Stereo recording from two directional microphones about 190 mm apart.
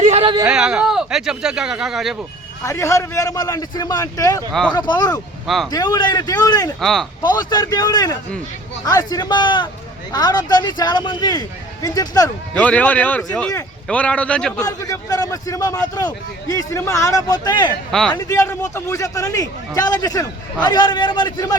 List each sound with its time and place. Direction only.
0.0 s speech: 30° right (ahead or behind)
0.4 s speech: 5° right (ahead or behind)
2.6 s a man's voice: 15° left (ahead or behind)
6.7 s speech: centre (ahead or behind)
7.2 s a man's voice: 20° left (ahead or behind)
12.5 s a man's voice: 5° left (ahead or behind)
14.6 s a man's voice: 20° left (ahead or behind)